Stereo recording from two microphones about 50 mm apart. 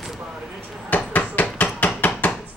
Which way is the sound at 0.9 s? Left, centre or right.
Left.